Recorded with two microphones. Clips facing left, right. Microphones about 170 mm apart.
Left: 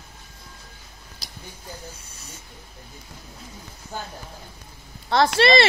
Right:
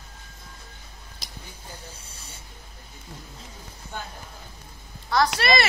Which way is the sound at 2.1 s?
30° right (ahead or behind).